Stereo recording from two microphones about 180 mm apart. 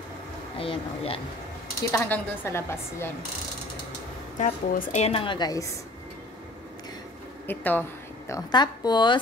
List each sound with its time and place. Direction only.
0.6 s a woman's voice: 30° left (ahead or behind)
1.9 s speech: 10° left (ahead or behind)
4.4 s a woman's voice: 40° left (ahead or behind); by 5.7 s 20° left (ahead or behind)
7.4 s speech: 10° left (ahead or behind)
8.3 s a woman's voice: 20° left (ahead or behind)